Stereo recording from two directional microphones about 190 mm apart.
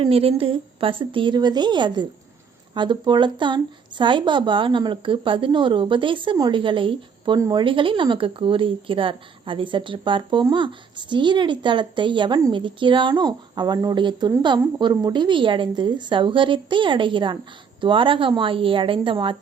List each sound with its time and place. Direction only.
0.0 s speech: 30° right (ahead or behind)